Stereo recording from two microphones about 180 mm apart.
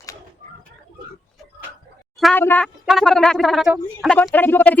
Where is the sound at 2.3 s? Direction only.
10° left (ahead or behind).